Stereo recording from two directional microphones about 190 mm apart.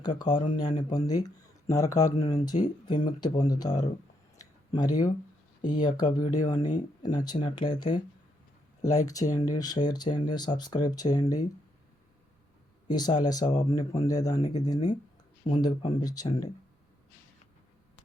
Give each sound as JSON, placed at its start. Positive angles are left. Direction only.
{"t": 0.0, "sound": "speech", "side_deg": 25}
{"t": 0.3, "sound": "speech", "side_deg": 40}
{"t": 0.8, "sound": "speech", "side_deg": 20}
{"t": 4.4, "sound": "a sound", "side_deg": 20}
{"t": 5.7, "sound": "speech", "side_deg": 20}
{"t": 12.9, "sound": "speech", "side_deg": 20}